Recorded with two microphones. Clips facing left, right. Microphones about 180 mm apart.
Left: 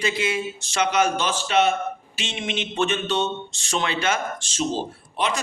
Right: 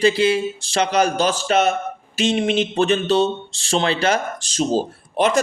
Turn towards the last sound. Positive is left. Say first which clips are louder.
# right 7 dB
turn(degrees=-45)  # may be behind; listen again after turning